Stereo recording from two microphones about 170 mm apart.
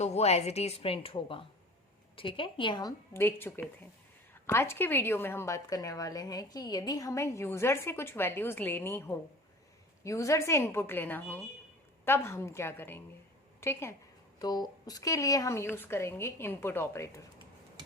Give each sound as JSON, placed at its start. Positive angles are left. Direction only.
{"t": 0.0, "sound": "a woman's voice", "side_deg": 40}
{"t": 3.1, "sound": "a woman's voice", "side_deg": 15}